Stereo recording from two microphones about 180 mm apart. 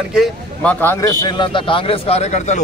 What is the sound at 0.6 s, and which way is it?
A man's voice, 10° left (ahead or behind).